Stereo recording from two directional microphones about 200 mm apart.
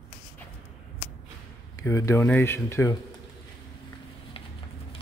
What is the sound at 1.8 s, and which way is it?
Speech, 15° left (ahead or behind).